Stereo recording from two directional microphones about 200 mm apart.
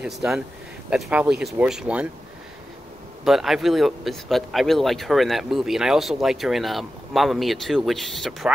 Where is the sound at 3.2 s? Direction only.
Centre (ahead or behind).